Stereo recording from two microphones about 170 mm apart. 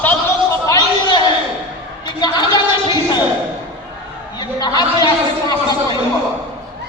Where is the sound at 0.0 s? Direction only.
15° left (ahead or behind).